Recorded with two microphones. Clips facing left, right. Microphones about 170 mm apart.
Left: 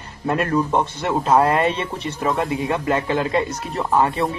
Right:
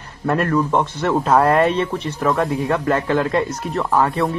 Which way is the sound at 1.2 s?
5° left (ahead or behind).